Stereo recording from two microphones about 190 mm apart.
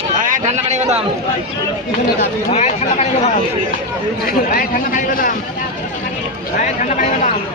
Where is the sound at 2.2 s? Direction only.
35° left (ahead or behind).